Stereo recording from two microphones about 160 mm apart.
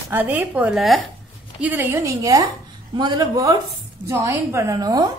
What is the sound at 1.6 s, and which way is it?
A woman's voice, 15° right (ahead or behind).